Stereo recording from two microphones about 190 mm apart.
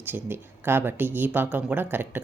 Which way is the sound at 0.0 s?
10° right (ahead or behind).